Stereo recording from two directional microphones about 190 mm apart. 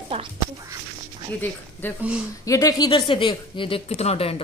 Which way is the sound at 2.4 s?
20° left (ahead or behind).